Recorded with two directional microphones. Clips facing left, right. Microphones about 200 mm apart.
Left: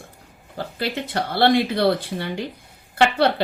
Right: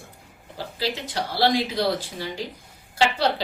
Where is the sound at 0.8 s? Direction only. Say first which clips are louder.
Left 2 dB; 55° left (ahead or behind).